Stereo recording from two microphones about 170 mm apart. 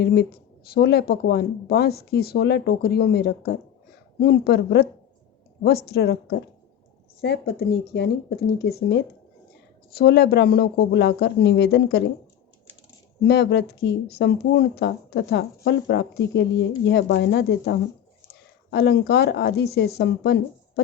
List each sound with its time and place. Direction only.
0.0 s speech: 70° left (ahead or behind)
7.2 s speech: 70° left (ahead or behind)
9.9 s speech: 70° left (ahead or behind)
13.2 s speech: 80° left
18.7 s speech: 80° left